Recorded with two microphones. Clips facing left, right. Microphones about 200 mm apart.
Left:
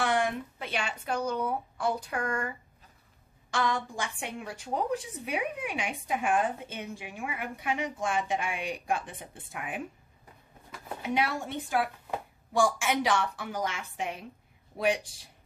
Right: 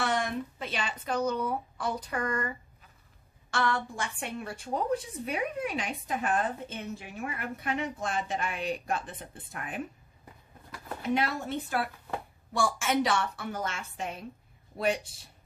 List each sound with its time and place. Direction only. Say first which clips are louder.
0.0 s a woman's voice: left 2 dB; 15° left (ahead or behind)
7.8 s a woman's voice: left 2 dB; 90° left
8.3 s a woman's voice: even; 10° left (ahead or behind)
11.0 s a woman's voice: right 1 dB; 10° left (ahead or behind)